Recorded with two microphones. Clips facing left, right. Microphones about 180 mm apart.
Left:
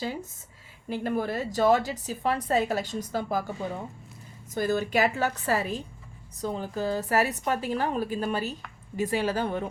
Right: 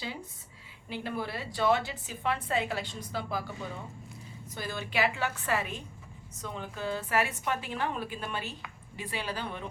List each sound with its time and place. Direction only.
0.0 s a woman's voice: 45° left (ahead or behind)
4.5 s a woman's voice: 45° left (ahead or behind)